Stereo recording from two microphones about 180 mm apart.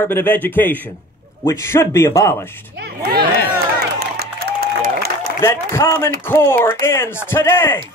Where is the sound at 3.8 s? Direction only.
60° right (ahead or behind).